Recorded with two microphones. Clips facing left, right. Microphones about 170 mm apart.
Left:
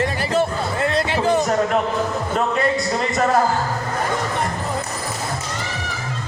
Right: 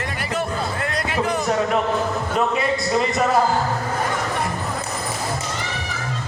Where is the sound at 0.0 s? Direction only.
30° left (ahead or behind).